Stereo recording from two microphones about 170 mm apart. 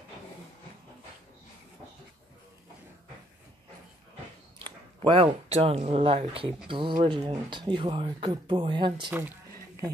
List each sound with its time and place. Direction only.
4.6 s speech: 30° right (ahead or behind)